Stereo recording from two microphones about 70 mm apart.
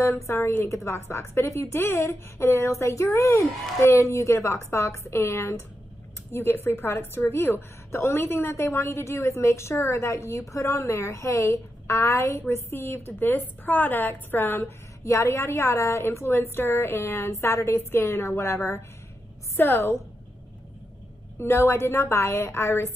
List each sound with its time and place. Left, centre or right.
0.0 s a woman's voice: left
15.0 s a woman's voice: left
21.4 s a woman's voice: left